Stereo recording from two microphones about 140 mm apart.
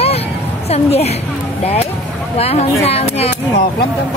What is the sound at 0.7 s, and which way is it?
Speech, 50° left (ahead or behind).